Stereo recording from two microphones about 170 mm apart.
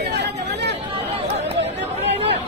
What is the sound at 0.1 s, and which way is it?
Chatter, 80° right.